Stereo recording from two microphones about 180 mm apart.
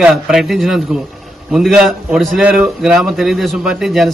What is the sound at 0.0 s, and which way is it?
A man's voice, centre (ahead or behind).